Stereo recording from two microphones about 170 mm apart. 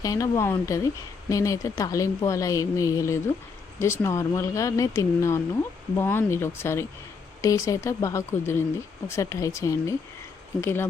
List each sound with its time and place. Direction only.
0.0 s a woman's voice: 20° left (ahead or behind)